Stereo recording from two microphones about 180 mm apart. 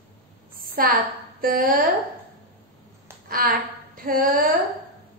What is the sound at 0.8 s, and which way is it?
Speech, 55° right (ahead or behind).